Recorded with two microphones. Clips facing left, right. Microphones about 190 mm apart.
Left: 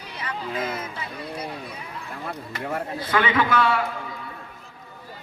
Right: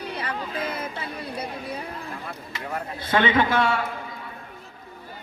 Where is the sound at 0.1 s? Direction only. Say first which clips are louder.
Even; 60° right (ahead or behind).